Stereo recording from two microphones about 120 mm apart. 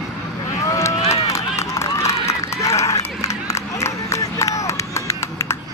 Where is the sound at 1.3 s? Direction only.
25° left (ahead or behind).